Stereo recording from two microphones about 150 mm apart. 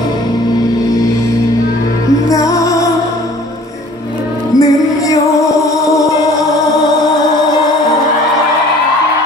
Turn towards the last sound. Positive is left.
turn(degrees=25)  # may be behind; listen again after turning